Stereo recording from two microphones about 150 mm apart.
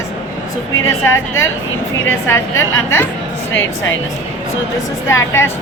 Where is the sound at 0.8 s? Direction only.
20° left (ahead or behind).